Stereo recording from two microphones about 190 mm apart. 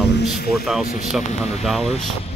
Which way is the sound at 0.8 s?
50° left (ahead or behind).